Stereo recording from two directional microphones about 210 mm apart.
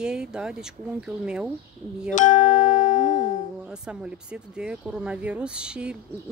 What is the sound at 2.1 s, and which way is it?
Music, 40° left (ahead or behind).